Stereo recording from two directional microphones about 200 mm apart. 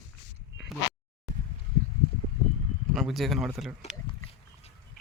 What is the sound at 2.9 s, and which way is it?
Speech, centre (ahead or behind).